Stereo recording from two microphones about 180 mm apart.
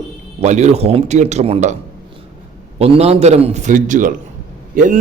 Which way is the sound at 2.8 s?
35° right (ahead or behind).